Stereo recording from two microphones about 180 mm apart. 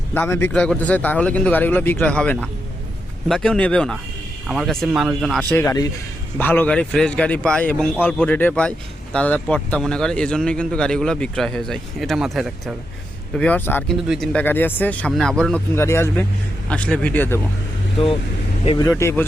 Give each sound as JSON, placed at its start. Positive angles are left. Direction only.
{"t": 0.1, "sound": "a man's voice", "side_deg": 10}
{"t": 5.5, "sound": "a man's voice", "side_deg": 10}
{"t": 15.7, "sound": "speech", "side_deg": 15}
{"t": 18.6, "sound": "speech", "side_deg": 30}
{"t": 18.9, "sound": "speech", "side_deg": 15}